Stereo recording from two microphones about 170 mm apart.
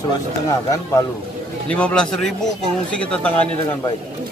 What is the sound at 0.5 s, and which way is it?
Speech, 20° left (ahead or behind).